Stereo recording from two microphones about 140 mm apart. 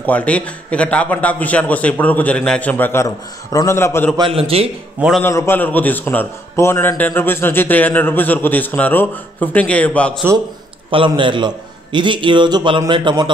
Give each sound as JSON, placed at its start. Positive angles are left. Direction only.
{"t": 0.0, "sound": "a man's voice", "side_deg": 10}
{"t": 4.2, "sound": "a man's voice", "side_deg": -45}
{"t": 5.2, "sound": "a man's voice", "side_deg": 15}
{"t": 10.9, "sound": "a man's voice", "side_deg": -35}